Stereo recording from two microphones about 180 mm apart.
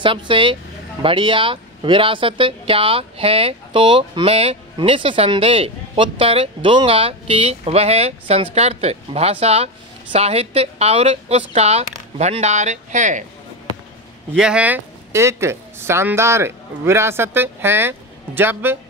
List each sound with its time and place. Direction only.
0.0 s speech: 30° right (ahead or behind)
14.3 s speech: 5° right (ahead or behind)